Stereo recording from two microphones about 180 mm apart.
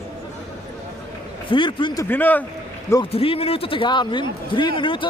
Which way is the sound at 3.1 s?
30° left (ahead or behind).